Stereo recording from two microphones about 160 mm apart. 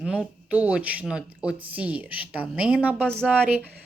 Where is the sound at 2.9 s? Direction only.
5° left (ahead or behind).